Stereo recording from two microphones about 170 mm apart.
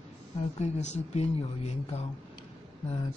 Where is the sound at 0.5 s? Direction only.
40° left (ahead or behind).